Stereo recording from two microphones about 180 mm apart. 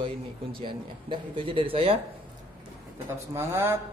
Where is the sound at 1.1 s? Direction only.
30° right (ahead or behind).